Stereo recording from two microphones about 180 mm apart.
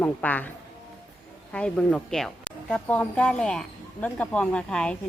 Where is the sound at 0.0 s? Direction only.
10° left (ahead or behind).